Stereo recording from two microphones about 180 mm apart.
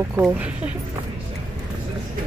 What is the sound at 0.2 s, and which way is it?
Speech, 10° right (ahead or behind).